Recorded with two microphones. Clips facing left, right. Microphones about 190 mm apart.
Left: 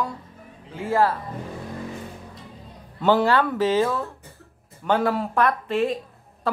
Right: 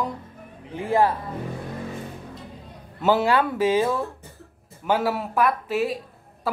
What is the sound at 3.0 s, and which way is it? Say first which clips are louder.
Speech: left 1 dB; 10° right (ahead or behind).